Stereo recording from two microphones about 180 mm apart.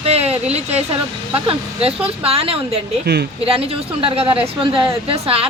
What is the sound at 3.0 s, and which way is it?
Speech, 65° right (ahead or behind).